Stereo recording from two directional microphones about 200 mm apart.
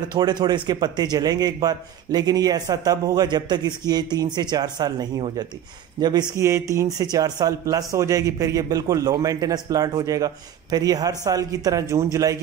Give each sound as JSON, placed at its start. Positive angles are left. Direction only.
{"t": 0.1, "sound": "a man's voice", "side_deg": -20}